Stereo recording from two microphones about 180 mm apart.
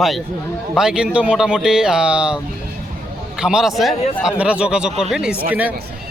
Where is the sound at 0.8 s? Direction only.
5° right (ahead or behind).